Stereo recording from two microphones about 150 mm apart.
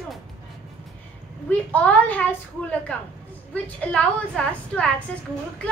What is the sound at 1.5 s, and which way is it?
A woman's voice, 10° left (ahead or behind).